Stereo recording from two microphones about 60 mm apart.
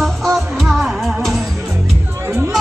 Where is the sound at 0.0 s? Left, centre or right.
Centre.